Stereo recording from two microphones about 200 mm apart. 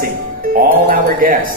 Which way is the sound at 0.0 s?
45° right (ahead or behind).